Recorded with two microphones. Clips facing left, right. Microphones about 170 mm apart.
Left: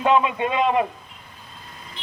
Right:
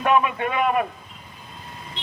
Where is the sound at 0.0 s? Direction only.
20° left (ahead or behind).